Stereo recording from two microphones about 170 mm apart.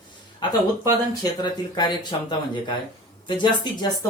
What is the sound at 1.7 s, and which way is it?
Speech, 25° left (ahead or behind).